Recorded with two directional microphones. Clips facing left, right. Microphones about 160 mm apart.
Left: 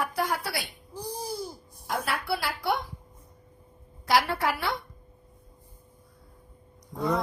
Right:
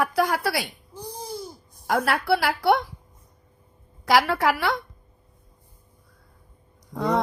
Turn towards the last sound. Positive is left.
turn(degrees=-75)  # may be behind; listen again after turning